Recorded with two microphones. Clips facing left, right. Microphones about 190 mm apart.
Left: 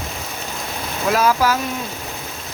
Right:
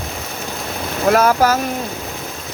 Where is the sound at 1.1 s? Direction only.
55° right (ahead or behind).